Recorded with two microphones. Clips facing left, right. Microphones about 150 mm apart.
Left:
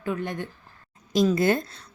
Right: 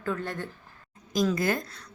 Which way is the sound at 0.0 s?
15° left (ahead or behind).